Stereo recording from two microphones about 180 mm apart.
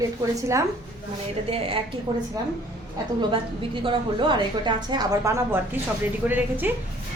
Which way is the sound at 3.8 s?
25° right (ahead or behind).